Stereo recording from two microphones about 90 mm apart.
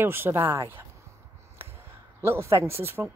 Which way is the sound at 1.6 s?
25° right (ahead or behind).